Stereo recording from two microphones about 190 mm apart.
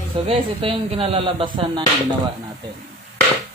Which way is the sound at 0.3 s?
30° right (ahead or behind).